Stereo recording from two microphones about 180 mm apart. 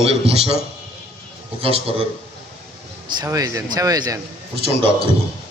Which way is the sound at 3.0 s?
20° right (ahead or behind).